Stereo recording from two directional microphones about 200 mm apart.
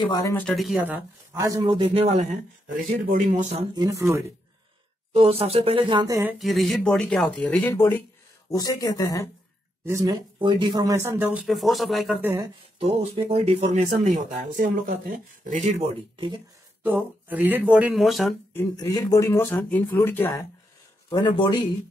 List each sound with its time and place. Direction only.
0.0 s speech: 20° left (ahead or behind); by 3.6 s 40° right (ahead or behind)
3.7 s speech: 20° right (ahead or behind)
5.1 s speech: 30° right (ahead or behind)
6.3 s speech: centre (ahead or behind); by 9.3 s 15° left (ahead or behind)
9.8 s speech: 15° right (ahead or behind); by 12.3 s centre (ahead or behind)
12.7 s speech: 30° right (ahead or behind)
17.3 s speech: 10° right (ahead or behind)
18.5 s speech: 15° left (ahead or behind)
21.1 s a man's voice: 25° left (ahead or behind)